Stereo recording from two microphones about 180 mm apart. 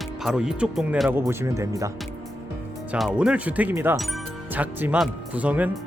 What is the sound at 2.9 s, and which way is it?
Speech, 5° right (ahead or behind).